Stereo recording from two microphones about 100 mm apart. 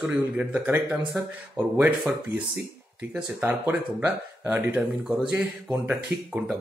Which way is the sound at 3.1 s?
15° right (ahead or behind).